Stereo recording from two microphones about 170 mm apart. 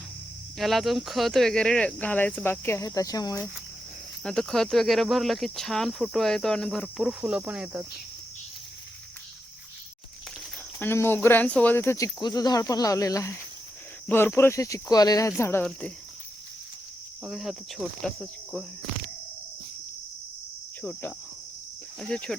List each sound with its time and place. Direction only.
0.6 s speech: centre (ahead or behind); by 3.4 s 20° left (ahead or behind)
4.2 s speech: 5° left (ahead or behind)
10.8 s speech: 15° left (ahead or behind)
17.2 s speech: centre (ahead or behind)
22.1 s speech: 5° left (ahead or behind)